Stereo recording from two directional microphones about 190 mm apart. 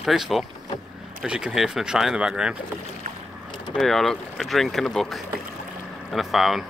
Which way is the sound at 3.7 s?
Centre (ahead or behind).